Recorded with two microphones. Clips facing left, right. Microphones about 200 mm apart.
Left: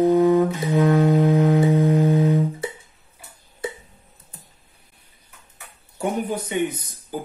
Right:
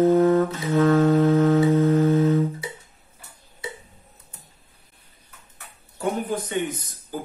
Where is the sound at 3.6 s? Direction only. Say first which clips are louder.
Left 6 dB; 50° left (ahead or behind).